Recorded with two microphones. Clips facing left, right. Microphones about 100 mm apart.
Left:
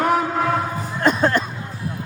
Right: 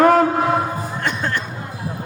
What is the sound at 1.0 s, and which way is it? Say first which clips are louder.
Music: left 7 dB; 40° left (ahead or behind).